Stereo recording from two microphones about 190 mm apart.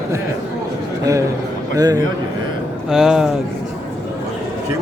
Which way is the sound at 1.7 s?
20° right (ahead or behind).